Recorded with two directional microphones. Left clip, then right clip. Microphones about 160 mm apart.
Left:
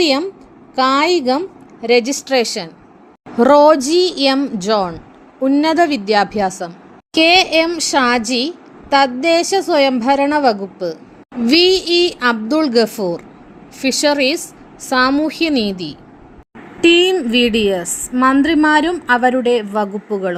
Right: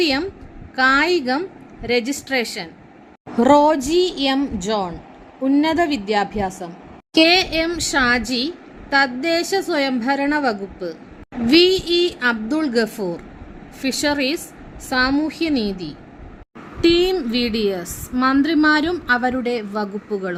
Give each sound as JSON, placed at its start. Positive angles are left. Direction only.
{"t": 0.0, "sound": "a woman's voice", "side_deg": 20}